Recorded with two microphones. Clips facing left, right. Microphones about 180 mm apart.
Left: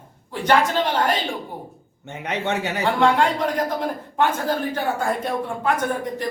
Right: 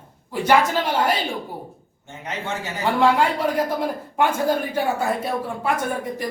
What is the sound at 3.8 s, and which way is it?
A man's voice, 10° right (ahead or behind).